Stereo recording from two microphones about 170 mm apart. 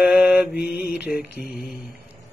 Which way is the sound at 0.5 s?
70° left (ahead or behind).